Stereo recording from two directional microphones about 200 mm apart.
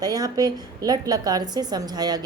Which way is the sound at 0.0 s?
20° right (ahead or behind).